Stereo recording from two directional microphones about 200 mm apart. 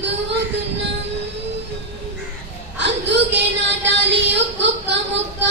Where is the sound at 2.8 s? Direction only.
60° right (ahead or behind).